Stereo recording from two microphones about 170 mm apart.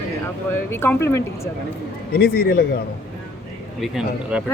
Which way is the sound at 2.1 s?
65° left (ahead or behind).